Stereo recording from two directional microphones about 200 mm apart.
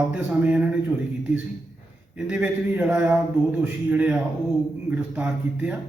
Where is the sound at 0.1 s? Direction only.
5° right (ahead or behind).